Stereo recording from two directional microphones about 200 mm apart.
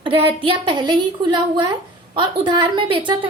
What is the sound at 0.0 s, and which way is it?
A woman's voice, 25° right (ahead or behind).